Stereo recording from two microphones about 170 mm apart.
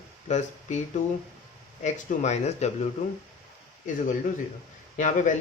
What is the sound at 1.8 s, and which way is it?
Speech, 45° left (ahead or behind).